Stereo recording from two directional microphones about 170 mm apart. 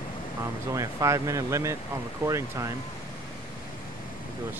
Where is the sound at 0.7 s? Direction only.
20° right (ahead or behind).